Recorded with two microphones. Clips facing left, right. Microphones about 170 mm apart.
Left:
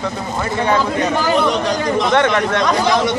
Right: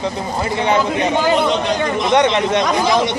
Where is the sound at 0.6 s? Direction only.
20° right (ahead or behind).